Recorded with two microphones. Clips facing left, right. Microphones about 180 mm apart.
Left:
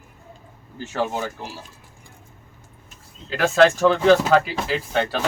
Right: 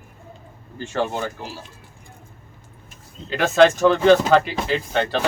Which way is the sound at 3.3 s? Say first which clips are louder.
Right 1 dB; centre (ahead or behind).